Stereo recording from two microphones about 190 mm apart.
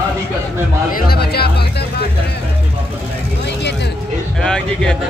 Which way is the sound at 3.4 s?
65° left (ahead or behind).